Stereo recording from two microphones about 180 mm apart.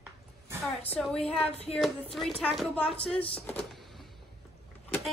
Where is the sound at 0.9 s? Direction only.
5° left (ahead or behind).